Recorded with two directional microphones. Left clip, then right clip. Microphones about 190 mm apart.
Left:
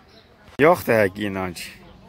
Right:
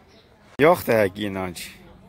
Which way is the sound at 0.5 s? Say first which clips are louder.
Left 1 dB; centre (ahead or behind).